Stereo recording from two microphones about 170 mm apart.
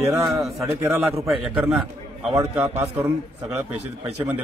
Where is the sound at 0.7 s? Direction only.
15° right (ahead or behind).